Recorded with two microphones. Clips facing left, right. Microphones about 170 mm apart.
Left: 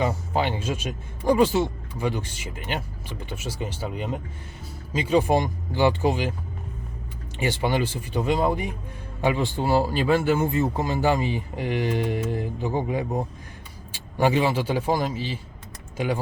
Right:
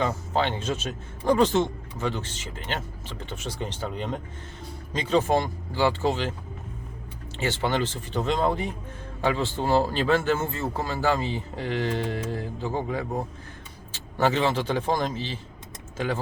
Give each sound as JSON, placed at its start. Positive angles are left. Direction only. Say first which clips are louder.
{"t": 0.0, "sound": "speech", "louder": "left 1 dB", "side_deg": 10}
{"t": 7.3, "sound": "speech", "louder": "left 2 dB", "side_deg": 15}